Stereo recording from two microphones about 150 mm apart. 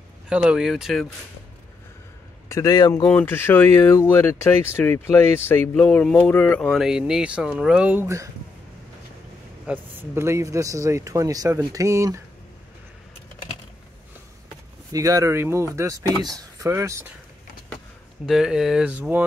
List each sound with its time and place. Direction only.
0.3 s speech: 5° right (ahead or behind)
2.5 s a man's voice: 25° left (ahead or behind)
3.1 s speech: 15° left (ahead or behind)
6.8 s speech: 5° right (ahead or behind)
9.7 s speech: 15° right (ahead or behind)
14.9 s speech: 20° right (ahead or behind)
18.2 s speech: 5° right (ahead or behind)